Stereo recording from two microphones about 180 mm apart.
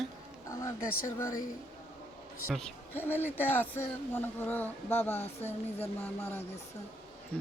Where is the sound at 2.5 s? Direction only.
5° left (ahead or behind).